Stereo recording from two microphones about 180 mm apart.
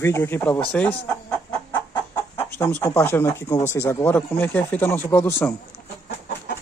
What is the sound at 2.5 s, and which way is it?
Speech, 10° left (ahead or behind).